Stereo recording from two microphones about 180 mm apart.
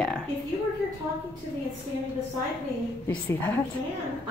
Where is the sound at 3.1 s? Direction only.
10° left (ahead or behind).